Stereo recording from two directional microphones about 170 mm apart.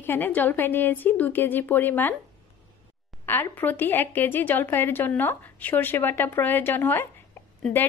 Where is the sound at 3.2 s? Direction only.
10° left (ahead or behind).